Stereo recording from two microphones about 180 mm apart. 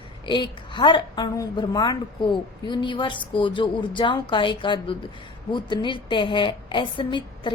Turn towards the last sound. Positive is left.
turn(degrees=25)  # may be behind; listen again after turning